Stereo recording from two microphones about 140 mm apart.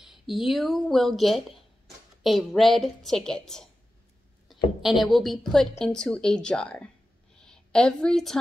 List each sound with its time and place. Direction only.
0.0 s a woman's voice: centre (ahead or behind)
4.8 s a woman's voice: centre (ahead or behind)